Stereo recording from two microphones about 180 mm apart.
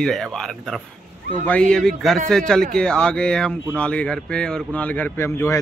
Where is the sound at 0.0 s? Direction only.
Centre (ahead or behind).